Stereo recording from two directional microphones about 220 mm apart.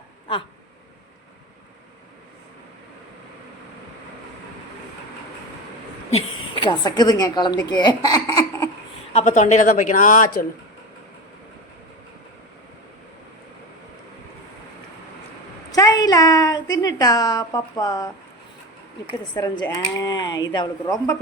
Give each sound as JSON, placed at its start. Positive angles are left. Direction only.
{"t": 6.1, "sound": "a woman's voice", "side_deg": 20}
{"t": 9.1, "sound": "speech", "side_deg": 30}
{"t": 15.7, "sound": "a sound", "side_deg": 15}
{"t": 16.8, "sound": "speech", "side_deg": 15}
{"t": 19.3, "sound": "speech", "side_deg": 20}